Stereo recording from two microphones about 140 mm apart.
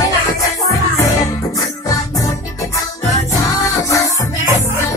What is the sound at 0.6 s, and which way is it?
Music, 25° left (ahead or behind).